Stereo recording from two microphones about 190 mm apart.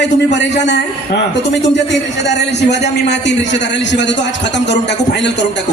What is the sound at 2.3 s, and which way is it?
A man's voice, 60° left (ahead or behind).